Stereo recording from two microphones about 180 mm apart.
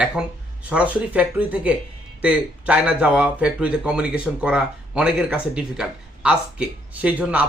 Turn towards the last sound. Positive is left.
turn(degrees=-5)  # may be behind; listen again after turning